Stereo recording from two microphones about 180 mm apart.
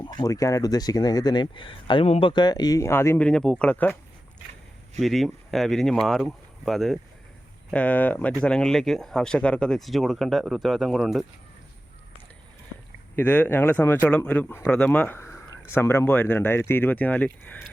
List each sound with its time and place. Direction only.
0.0 s speech: 20° left (ahead or behind)
4.9 s speech: centre (ahead or behind)
13.1 s speech: 10° left (ahead or behind)